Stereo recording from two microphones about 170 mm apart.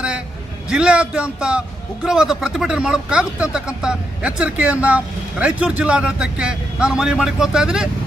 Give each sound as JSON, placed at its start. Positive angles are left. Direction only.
{"t": 0.7, "sound": "a man's voice", "side_deg": -5}